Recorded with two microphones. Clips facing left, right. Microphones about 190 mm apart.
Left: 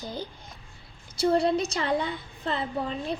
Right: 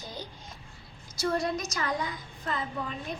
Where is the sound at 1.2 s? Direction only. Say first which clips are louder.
Left 6 dB; 30° left (ahead or behind).